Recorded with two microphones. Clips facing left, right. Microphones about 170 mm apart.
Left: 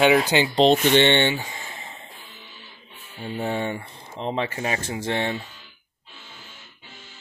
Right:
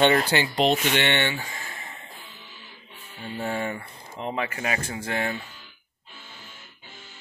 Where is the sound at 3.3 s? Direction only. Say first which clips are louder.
Left 2 dB; 25° left (ahead or behind).